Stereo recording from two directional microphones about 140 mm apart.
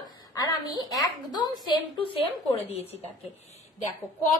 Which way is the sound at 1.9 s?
40° left (ahead or behind).